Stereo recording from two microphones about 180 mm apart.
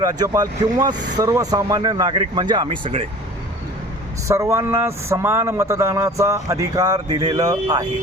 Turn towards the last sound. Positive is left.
turn(degrees=-20)  # may be behind; listen again after turning